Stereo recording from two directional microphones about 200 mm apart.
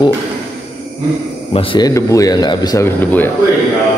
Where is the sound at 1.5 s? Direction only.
25° left (ahead or behind); by 3.3 s 10° left (ahead or behind).